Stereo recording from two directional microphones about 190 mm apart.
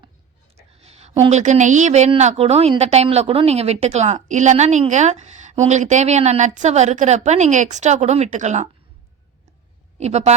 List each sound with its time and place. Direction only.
0.5 s a woman's voice: 35° right (ahead or behind)
10.0 s a woman's voice: 35° right (ahead or behind)